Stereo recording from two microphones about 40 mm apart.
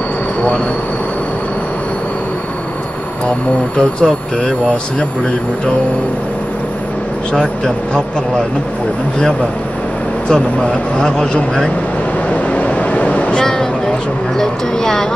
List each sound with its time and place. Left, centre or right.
3.7 s speech: centre
11.0 s a man's voice: left
12.3 s vehicle: left
13.4 s a sound: centre
14.4 s speech: centre